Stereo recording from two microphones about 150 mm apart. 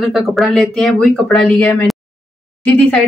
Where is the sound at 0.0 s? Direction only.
Centre (ahead or behind).